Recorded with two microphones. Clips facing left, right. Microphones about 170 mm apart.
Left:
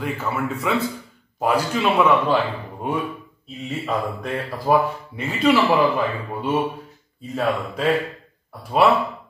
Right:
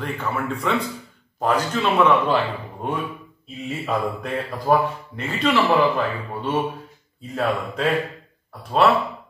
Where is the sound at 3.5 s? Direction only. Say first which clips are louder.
Even; centre (ahead or behind).